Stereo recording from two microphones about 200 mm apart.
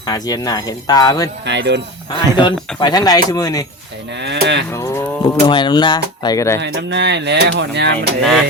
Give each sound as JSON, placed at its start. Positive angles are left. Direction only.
{"t": 0.0, "sound": "speech", "side_deg": 20}
{"t": 1.5, "sound": "speech", "side_deg": -60}
{"t": 2.4, "sound": "speech", "side_deg": 20}
{"t": 4.2, "sound": "speech", "side_deg": -60}
{"t": 4.7, "sound": "speech", "side_deg": 20}
{"t": 6.6, "sound": "speech", "side_deg": -60}